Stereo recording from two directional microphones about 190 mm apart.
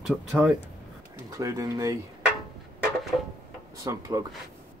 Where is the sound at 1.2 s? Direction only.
15° right (ahead or behind).